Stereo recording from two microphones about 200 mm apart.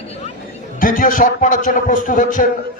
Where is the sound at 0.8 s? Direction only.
45° left (ahead or behind).